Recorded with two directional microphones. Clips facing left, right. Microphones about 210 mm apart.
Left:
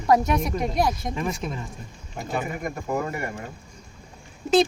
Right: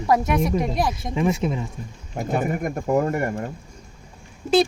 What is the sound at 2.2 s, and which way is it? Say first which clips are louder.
Speech: right 5 dB; 45° right (ahead or behind).